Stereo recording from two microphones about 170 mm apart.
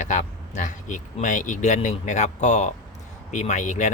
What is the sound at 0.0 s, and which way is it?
Speech, 45° left (ahead or behind).